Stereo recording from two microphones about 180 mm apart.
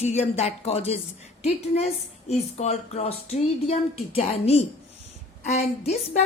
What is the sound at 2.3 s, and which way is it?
A woman's voice, 40° left (ahead or behind).